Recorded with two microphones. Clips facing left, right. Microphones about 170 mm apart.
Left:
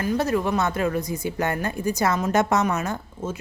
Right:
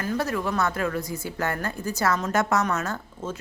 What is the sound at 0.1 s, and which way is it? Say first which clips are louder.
Speech: left 4 dB; 20° left (ahead or behind).